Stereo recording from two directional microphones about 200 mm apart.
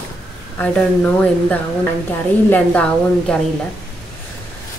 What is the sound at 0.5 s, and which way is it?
A woman's voice, 5° left (ahead or behind).